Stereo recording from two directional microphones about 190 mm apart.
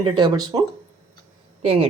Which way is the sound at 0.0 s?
25° right (ahead or behind).